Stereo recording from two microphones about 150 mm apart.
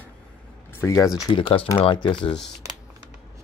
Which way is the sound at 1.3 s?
35° left (ahead or behind).